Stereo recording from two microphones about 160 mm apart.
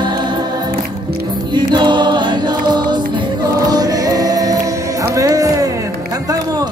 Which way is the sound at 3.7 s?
25° right (ahead or behind).